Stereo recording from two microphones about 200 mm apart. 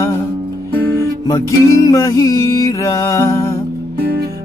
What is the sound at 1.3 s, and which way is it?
Music, 15° left (ahead or behind).